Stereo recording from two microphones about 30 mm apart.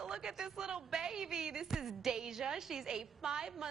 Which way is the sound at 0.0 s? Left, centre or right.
Right.